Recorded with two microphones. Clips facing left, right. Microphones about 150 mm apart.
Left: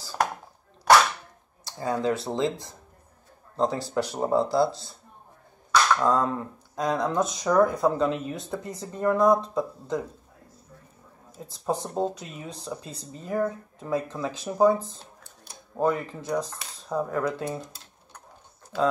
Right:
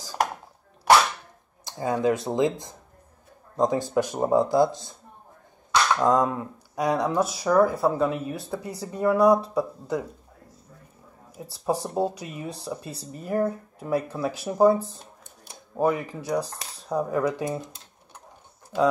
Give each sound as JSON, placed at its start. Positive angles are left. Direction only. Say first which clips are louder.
{"t": 0.0, "sound": "chopping", "louder": "even", "side_deg": -15}
{"t": 1.6, "sound": "speech", "louder": "right 3 dB", "side_deg": -15}
{"t": 5.9, "sound": "speech", "louder": "right 2 dB", "side_deg": -15}
{"t": 11.3, "sound": "speech", "louder": "right 2 dB", "side_deg": -10}